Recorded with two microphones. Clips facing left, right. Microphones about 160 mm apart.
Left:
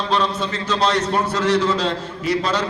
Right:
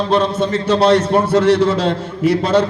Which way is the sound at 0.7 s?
55° right (ahead or behind).